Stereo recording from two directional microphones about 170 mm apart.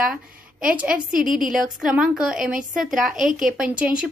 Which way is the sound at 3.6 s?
5° right (ahead or behind).